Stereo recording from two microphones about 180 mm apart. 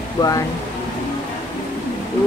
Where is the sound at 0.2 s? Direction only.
20° left (ahead or behind).